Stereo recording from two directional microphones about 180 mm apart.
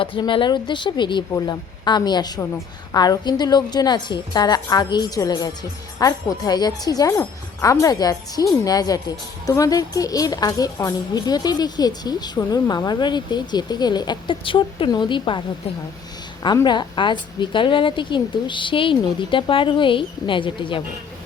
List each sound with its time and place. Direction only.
0.0 s speech: 30° left (ahead or behind)
16.4 s speech: 25° left (ahead or behind)